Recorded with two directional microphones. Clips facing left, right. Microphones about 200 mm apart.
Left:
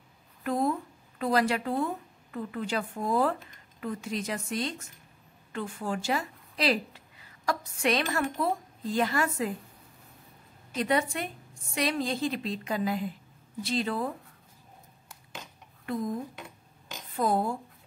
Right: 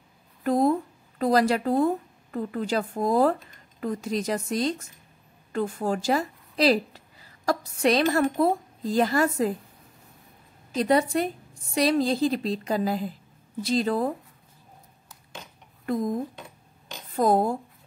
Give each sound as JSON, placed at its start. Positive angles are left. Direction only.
{"t": 0.4, "sound": "a woman's voice", "side_deg": -35}
{"t": 10.7, "sound": "a woman's voice", "side_deg": -35}
{"t": 15.8, "sound": "speech", "side_deg": -40}
{"t": 17.1, "sound": "speech", "side_deg": -40}